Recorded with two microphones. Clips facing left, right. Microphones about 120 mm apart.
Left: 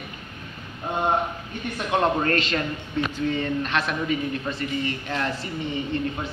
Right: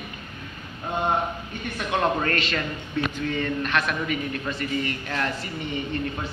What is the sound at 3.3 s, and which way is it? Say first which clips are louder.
A man's voice: even; 25° left (ahead or behind).